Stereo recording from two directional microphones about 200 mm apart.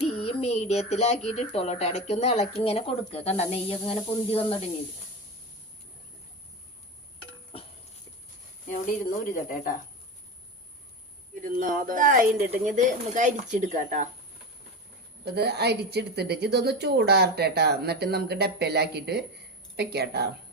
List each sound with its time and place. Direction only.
0.2 s speech: 30° left (ahead or behind)
9.3 s speech: 40° left (ahead or behind)
11.5 s speech: 45° right (ahead or behind)
15.2 s a woman's voice: 55° right (ahead or behind)